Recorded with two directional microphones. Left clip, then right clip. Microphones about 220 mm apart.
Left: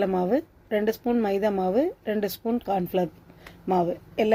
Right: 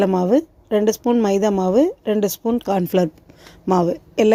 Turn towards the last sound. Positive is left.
turn(degrees=-45)  # may be behind; listen again after turning